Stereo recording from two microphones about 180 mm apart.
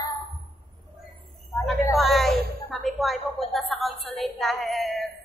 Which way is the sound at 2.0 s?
Centre (ahead or behind).